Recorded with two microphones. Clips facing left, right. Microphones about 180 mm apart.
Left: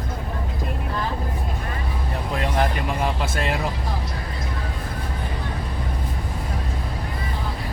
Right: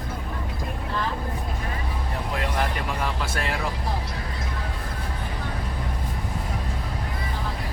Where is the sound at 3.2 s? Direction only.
20° left (ahead or behind).